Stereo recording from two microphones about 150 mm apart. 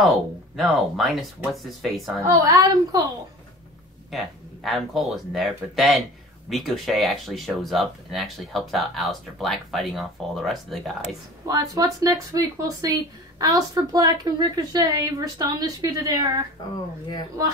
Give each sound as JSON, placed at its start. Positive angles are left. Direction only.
{"t": 0.6, "sound": "speech", "side_deg": 0}
{"t": 2.2, "sound": "a woman's voice", "side_deg": -25}
{"t": 4.1, "sound": "speech", "side_deg": 0}
{"t": 11.4, "sound": "a woman's voice", "side_deg": -25}